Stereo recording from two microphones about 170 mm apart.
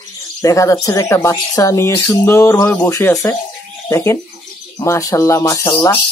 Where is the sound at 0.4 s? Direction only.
20° left (ahead or behind).